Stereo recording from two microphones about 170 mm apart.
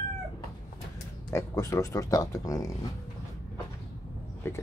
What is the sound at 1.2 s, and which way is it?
Speech, 15° left (ahead or behind).